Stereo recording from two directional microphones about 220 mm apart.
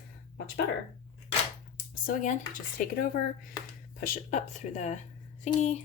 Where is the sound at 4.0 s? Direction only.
30° left (ahead or behind).